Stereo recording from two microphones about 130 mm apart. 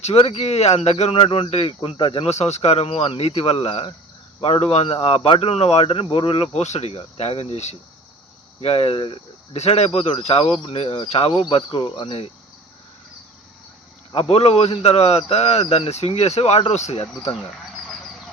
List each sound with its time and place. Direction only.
0.0 s speech: 50° left (ahead or behind)
2.3 s speech: 55° left (ahead or behind)
14.1 s speech: 50° left (ahead or behind)